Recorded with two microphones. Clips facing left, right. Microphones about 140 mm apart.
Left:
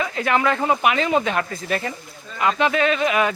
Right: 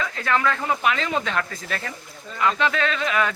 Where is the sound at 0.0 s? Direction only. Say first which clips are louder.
Left 3 dB; 15° left (ahead or behind).